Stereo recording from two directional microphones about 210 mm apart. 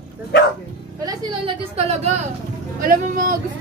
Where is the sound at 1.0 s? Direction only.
15° right (ahead or behind).